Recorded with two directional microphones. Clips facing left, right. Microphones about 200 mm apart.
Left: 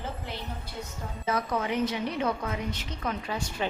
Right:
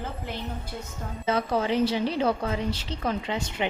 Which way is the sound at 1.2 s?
30° right (ahead or behind).